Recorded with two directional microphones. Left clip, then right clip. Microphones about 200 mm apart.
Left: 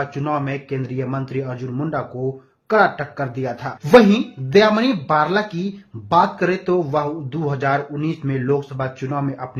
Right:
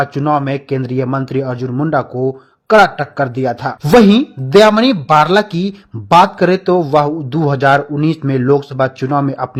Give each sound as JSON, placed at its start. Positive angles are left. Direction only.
{"t": 0.0, "sound": "speech", "side_deg": -35}